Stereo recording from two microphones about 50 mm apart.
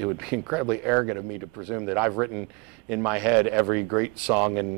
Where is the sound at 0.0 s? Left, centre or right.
Centre.